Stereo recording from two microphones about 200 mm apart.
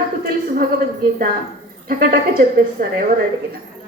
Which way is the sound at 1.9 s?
45° right (ahead or behind).